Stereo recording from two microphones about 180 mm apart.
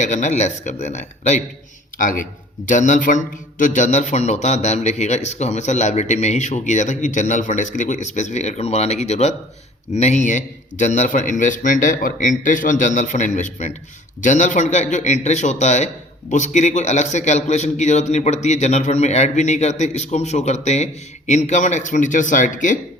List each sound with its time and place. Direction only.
0.0 s a man's voice: 45° left (ahead or behind)